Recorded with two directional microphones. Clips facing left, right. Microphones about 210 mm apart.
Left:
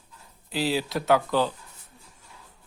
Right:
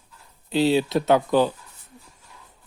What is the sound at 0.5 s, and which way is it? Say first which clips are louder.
Speech: right 7 dB; 25° right (ahead or behind).